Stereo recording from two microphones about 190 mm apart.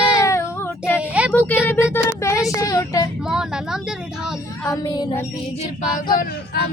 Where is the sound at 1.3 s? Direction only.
10° left (ahead or behind).